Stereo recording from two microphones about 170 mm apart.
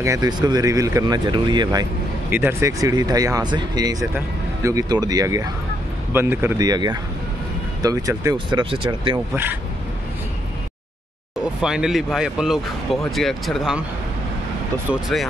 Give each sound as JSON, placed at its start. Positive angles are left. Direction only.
{"t": 0.0, "sound": "speech", "side_deg": -20}
{"t": 9.3, "sound": "speech", "side_deg": -10}
{"t": 11.6, "sound": "speech", "side_deg": -5}
{"t": 14.9, "sound": "speech", "side_deg": 0}